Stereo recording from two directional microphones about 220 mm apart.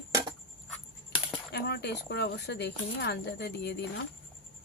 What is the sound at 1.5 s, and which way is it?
Speech, 50° left (ahead or behind).